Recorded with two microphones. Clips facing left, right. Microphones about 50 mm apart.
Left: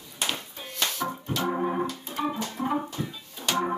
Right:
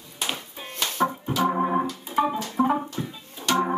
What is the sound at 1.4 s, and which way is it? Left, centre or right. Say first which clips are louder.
Organ: right 5 dB; centre.